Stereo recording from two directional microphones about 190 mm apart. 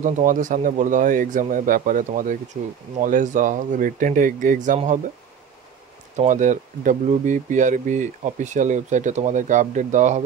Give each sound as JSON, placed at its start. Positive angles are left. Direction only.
{"t": 0.0, "sound": "speech", "side_deg": -45}
{"t": 6.1, "sound": "speech", "side_deg": -40}